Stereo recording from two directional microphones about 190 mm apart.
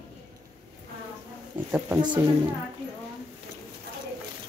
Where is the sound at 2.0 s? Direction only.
25° right (ahead or behind).